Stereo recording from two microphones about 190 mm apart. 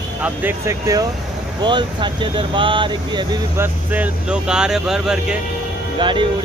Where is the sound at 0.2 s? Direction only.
10° right (ahead or behind).